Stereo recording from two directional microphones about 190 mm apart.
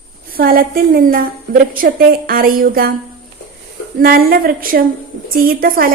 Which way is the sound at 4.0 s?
50° right (ahead or behind).